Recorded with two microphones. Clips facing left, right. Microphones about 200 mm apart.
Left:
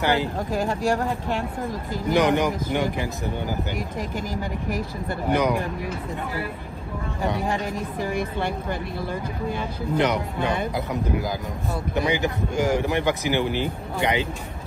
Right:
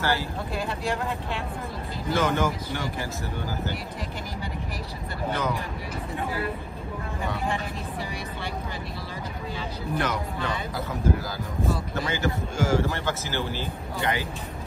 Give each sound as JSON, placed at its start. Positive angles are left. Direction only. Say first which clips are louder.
{"t": 0.0, "sound": "speech", "louder": "left 5 dB", "side_deg": 20}
{"t": 0.5, "sound": "a woman's voice", "louder": "left 5 dB", "side_deg": 45}
{"t": 2.0, "sound": "a man's voice", "louder": "left 4 dB", "side_deg": 15}
{"t": 4.3, "sound": "a woman's voice", "louder": "left 6 dB", "side_deg": 45}
{"t": 5.3, "sound": "a man's voice", "louder": "left 7 dB", "side_deg": 15}
{"t": 8.0, "sound": "a woman's voice", "louder": "left 12 dB", "side_deg": 50}
{"t": 9.9, "sound": "a man's voice", "louder": "left 6 dB", "side_deg": 20}